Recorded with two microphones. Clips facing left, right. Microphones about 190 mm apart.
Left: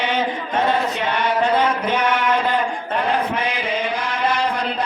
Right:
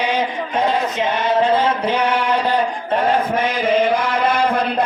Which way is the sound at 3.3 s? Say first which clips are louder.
Right 6 dB; 50° right (ahead or behind).